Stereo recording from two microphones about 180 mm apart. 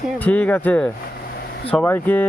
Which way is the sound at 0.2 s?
10° left (ahead or behind).